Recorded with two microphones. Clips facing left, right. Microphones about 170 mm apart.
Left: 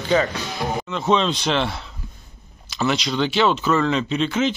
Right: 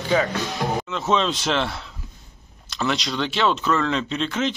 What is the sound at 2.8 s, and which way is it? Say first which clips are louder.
Speech: left 3 dB; centre (ahead or behind).